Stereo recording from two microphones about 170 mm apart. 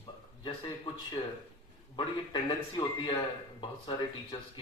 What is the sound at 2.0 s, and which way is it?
A man's voice, 25° left (ahead or behind).